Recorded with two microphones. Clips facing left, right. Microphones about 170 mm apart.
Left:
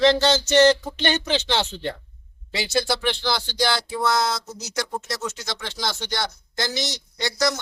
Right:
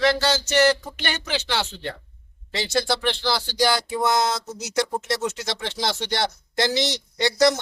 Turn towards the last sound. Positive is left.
turn(degrees=-25)  # may be behind; listen again after turning